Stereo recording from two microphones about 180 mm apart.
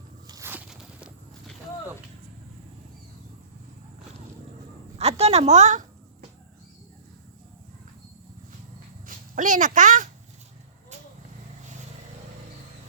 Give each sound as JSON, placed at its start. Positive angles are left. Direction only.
{"t": 0.3, "sound": "walk", "side_deg": -15}
{"t": 4.9, "sound": "a sound", "side_deg": -35}
{"t": 9.0, "sound": "speech", "side_deg": -45}